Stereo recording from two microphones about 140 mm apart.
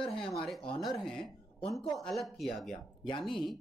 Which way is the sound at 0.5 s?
5° left (ahead or behind).